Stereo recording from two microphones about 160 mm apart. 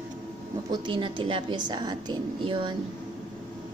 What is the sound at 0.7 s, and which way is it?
A woman's voice, 30° right (ahead or behind).